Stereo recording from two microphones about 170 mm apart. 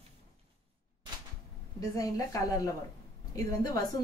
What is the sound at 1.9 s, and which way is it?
A woman's voice, 20° left (ahead or behind).